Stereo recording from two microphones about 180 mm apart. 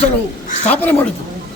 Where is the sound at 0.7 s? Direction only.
10° left (ahead or behind).